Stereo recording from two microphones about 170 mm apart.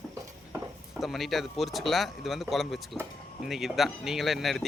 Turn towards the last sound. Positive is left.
turn(degrees=0)  # may be behind; listen again after turning